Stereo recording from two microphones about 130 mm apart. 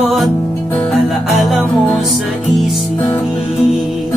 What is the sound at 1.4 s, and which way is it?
Music, centre (ahead or behind).